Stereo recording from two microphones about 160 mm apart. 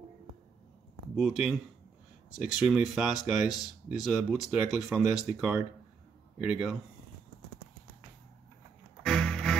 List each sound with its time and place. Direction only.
1.1 s speech: 5° right (ahead or behind)
9.0 s music: 5° left (ahead or behind)